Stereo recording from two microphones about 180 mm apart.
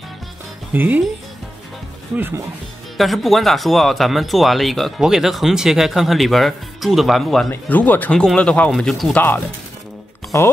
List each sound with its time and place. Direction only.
0.7 s speech: 10° right (ahead or behind)
2.1 s speech: 10° right (ahead or behind)
3.0 s speech: centre (ahead or behind)